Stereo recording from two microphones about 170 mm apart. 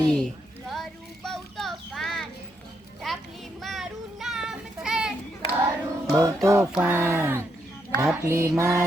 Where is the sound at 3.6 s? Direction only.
Centre (ahead or behind).